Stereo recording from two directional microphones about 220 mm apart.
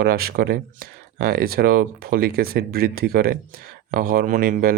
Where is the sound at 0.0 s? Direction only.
45° right (ahead or behind).